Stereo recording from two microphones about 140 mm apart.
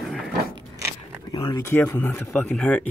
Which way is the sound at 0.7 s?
20° right (ahead or behind).